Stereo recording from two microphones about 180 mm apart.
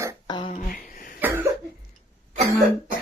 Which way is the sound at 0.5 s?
50° left (ahead or behind).